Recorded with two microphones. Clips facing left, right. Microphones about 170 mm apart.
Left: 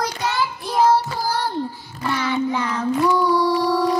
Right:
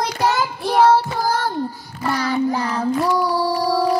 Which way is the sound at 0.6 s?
65° right (ahead or behind).